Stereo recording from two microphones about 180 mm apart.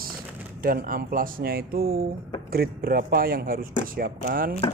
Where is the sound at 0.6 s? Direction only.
50° right (ahead or behind).